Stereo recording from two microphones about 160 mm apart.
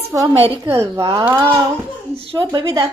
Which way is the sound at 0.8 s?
20° right (ahead or behind).